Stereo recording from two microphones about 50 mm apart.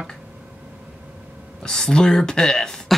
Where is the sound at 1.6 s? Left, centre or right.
Centre.